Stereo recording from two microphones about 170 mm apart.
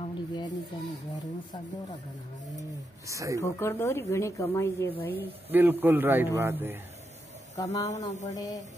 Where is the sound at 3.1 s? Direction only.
20° right (ahead or behind).